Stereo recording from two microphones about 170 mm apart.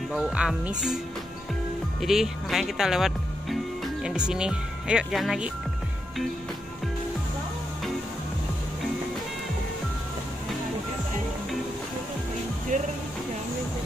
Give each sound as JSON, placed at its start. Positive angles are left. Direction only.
{"t": 0.1, "sound": "speech", "side_deg": -5}
{"t": 12.7, "sound": "music", "side_deg": -50}